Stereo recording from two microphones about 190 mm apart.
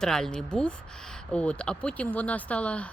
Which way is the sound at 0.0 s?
5° left (ahead or behind).